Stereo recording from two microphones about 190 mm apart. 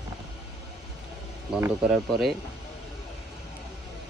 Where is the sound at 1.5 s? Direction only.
5° right (ahead or behind).